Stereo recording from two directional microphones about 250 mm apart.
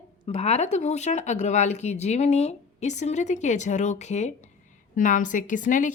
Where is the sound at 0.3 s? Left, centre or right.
Left.